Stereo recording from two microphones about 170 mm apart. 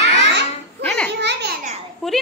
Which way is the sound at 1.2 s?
85° right.